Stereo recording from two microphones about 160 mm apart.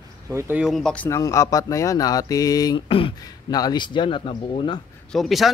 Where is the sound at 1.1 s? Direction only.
20° left (ahead or behind).